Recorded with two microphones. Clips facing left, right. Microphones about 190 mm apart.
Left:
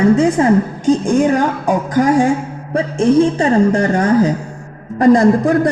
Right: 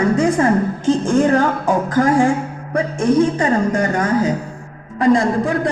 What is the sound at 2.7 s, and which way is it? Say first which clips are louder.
A woman's voice: left 3 dB; 25° left (ahead or behind).